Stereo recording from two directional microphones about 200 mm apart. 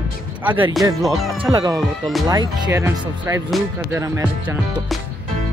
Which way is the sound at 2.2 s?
20° right (ahead or behind).